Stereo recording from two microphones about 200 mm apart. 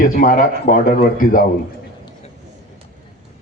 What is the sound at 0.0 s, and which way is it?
A man's voice, 45° left (ahead or behind).